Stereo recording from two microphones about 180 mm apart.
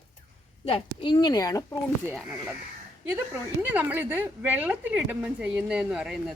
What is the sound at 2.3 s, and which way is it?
A woman's voice, 10° right (ahead or behind).